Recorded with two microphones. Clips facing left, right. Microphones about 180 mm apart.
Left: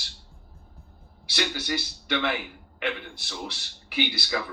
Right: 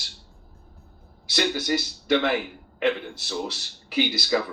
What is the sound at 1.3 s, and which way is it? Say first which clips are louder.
Speech: right 5 dB; 40° right (ahead or behind).